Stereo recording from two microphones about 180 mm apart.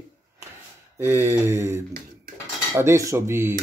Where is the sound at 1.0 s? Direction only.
10° right (ahead or behind).